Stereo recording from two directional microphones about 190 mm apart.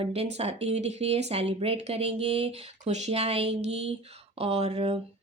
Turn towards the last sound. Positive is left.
turn(degrees=-30)  # may be behind; listen again after turning